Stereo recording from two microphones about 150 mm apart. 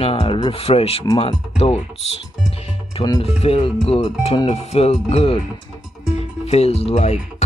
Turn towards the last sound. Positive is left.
turn(degrees=45)  # may be behind; listen again after turning